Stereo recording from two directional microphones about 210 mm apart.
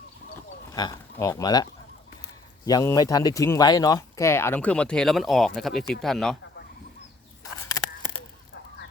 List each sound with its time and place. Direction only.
0.7 s speech: 15° left (ahead or behind)
2.6 s speech: 15° left (ahead or behind); by 6.3 s centre (ahead or behind)